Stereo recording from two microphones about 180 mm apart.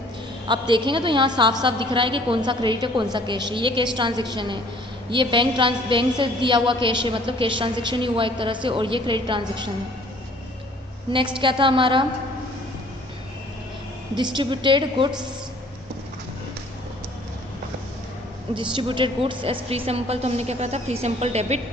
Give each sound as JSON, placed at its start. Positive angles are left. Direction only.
{"t": 0.4, "sound": "a woman's voice", "side_deg": -25}
{"t": 11.3, "sound": "a woman's voice", "side_deg": -25}
{"t": 14.3, "sound": "a woman's voice", "side_deg": -25}
{"t": 18.5, "sound": "a woman's voice", "side_deg": -30}